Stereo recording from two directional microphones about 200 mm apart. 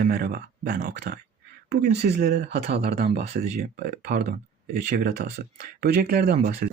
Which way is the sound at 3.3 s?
50° right (ahead or behind).